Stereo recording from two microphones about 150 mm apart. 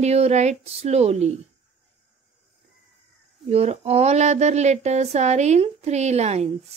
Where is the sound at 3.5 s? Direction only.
45° right (ahead or behind).